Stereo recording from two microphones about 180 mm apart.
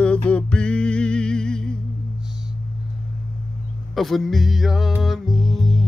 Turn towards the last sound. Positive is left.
turn(degrees=0)  # may be behind; listen again after turning